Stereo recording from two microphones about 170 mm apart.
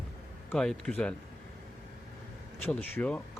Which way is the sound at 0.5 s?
5° left (ahead or behind).